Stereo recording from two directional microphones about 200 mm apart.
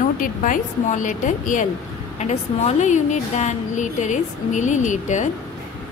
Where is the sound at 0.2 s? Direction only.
40° left (ahead or behind).